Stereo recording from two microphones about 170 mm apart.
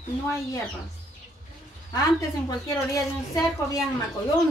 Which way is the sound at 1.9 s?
20° left (ahead or behind).